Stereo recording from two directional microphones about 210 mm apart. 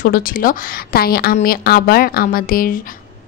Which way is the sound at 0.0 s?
40° left (ahead or behind).